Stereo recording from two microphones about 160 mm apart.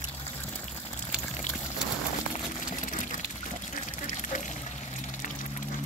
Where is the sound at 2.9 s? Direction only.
55° left (ahead or behind).